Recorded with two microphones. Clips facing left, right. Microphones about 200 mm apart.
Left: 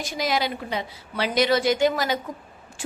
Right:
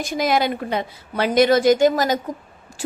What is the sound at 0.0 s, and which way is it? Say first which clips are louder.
A woman's voice: right 5 dB; 55° right (ahead or behind).